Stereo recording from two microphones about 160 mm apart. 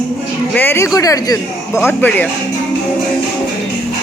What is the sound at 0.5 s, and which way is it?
Speech, 15° left (ahead or behind).